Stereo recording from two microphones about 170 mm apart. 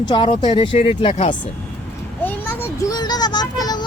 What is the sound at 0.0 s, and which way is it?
Speech, 25° left (ahead or behind).